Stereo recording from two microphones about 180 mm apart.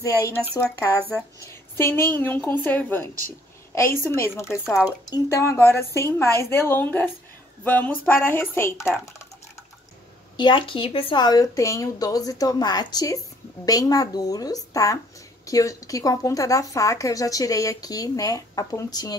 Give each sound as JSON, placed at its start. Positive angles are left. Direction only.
{"t": 0.0, "sound": "speech", "side_deg": 15}
{"t": 1.4, "sound": "speech", "side_deg": 15}
{"t": 10.3, "sound": "a woman's voice", "side_deg": 25}